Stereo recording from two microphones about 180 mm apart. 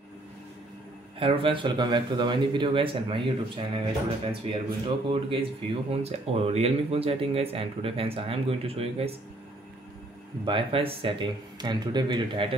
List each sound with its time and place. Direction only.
1.2 s speech: 30° right (ahead or behind)
10.4 s speech: 30° right (ahead or behind)